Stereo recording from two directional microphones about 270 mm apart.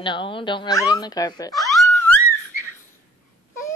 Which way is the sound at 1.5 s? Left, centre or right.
Centre.